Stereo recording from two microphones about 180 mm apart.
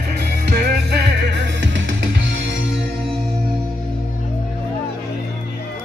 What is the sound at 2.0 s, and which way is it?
Music, 80° right.